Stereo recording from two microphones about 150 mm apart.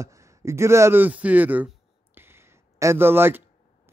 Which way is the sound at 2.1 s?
15° right (ahead or behind).